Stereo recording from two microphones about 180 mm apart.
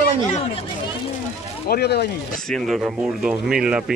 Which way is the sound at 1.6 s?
65° left (ahead or behind).